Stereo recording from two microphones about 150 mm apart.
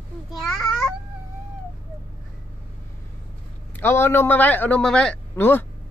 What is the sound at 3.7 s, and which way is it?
A man's voice, 15° left (ahead or behind).